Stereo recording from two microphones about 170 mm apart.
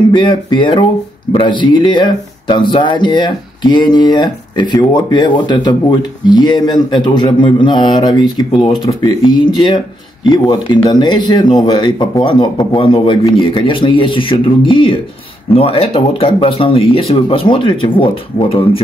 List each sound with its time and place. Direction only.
0.1 s speech: 30° left (ahead or behind)